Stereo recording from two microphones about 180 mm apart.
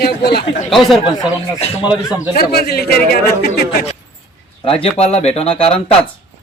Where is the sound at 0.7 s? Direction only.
Centre (ahead or behind).